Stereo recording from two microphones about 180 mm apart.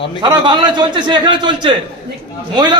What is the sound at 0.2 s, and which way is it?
A man's voice, 25° right (ahead or behind).